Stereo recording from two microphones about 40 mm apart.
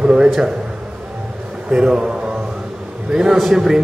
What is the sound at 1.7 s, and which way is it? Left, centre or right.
Speech, centre.